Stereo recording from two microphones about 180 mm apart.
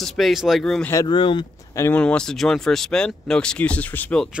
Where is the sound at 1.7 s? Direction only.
15° left (ahead or behind).